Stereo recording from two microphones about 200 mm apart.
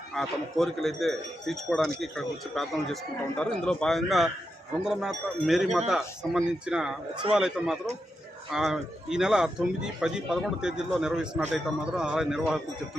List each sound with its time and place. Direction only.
0.1 s a man's voice: centre (ahead or behind)